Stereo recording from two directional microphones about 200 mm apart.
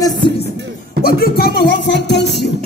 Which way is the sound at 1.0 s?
50° left (ahead or behind).